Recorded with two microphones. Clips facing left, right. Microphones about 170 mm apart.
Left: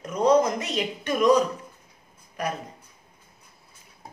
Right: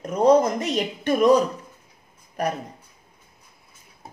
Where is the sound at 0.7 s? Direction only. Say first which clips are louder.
Right 5 dB; 40° right (ahead or behind).